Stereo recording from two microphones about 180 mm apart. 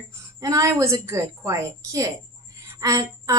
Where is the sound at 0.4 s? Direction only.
15° right (ahead or behind).